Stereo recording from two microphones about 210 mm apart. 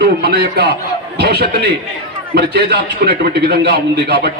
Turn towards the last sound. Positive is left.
turn(degrees=-50)  # may be behind; listen again after turning